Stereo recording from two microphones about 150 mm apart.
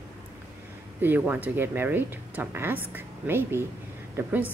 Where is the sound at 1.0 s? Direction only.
10° right (ahead or behind).